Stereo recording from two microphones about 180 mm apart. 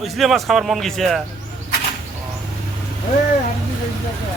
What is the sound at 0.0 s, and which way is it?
Speech, centre (ahead or behind).